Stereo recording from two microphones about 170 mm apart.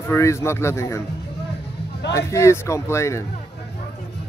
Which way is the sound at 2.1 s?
15° left (ahead or behind).